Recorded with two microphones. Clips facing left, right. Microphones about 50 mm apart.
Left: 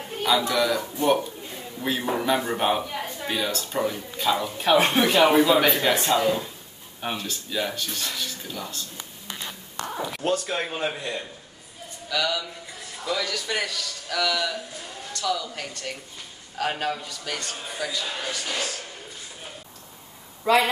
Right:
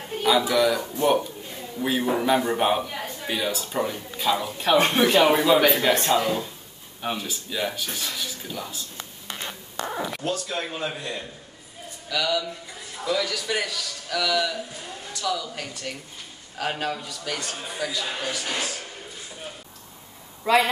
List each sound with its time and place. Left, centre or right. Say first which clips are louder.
0.2 s a man's voice: right 2 dB; centre
9.5 s a sound: right 2 dB; centre
10.2 s speech: left 3 dB; left
12.1 s a man's voice: right 1 dB; centre
20.5 s a man's voice: even; centre